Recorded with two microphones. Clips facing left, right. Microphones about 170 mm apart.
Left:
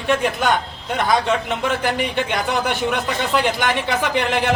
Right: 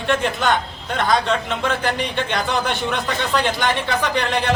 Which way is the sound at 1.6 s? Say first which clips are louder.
Left 1 dB; 15° left (ahead or behind).